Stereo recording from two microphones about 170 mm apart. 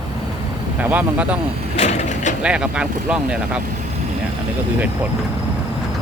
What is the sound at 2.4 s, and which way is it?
Speech, 5° right (ahead or behind).